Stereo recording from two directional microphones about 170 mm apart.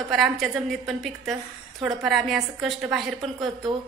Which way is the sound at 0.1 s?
Centre (ahead or behind).